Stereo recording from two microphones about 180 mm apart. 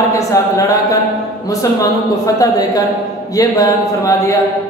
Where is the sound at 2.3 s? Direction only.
20° left (ahead or behind).